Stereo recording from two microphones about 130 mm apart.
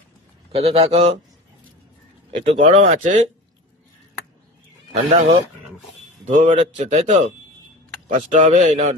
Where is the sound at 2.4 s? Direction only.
60° right (ahead or behind).